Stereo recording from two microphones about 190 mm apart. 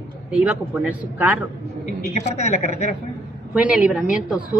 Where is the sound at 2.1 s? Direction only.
35° left (ahead or behind).